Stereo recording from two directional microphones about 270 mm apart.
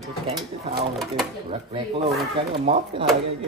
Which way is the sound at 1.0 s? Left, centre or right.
Centre.